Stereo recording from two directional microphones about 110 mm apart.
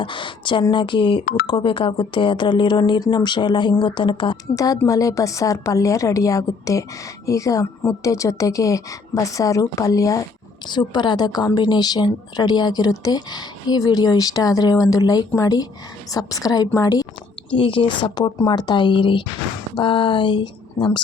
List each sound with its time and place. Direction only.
0.0 s speech: 45° left (ahead or behind)
4.5 s a woman's voice: 30° left (ahead or behind)
10.7 s a woman's voice: 40° left (ahead or behind)
17.5 s speech: 50° left (ahead or behind)